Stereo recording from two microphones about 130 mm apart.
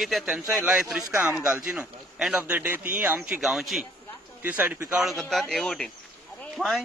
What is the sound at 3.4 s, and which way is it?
Speech, centre (ahead or behind).